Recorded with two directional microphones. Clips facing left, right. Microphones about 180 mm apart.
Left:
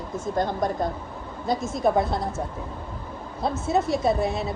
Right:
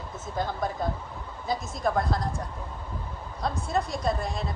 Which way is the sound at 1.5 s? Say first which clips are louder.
Left 5 dB; centre (ahead or behind).